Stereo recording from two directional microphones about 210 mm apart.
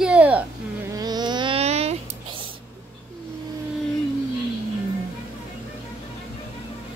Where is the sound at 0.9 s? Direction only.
20° right (ahead or behind).